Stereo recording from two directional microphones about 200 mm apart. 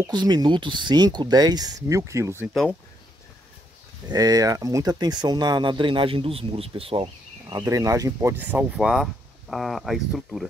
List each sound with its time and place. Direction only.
0.0 s speech: 20° right (ahead or behind)
2.4 s speech: centre (ahead or behind)
4.1 s speech: 20° right (ahead or behind); by 10.5 s centre (ahead or behind)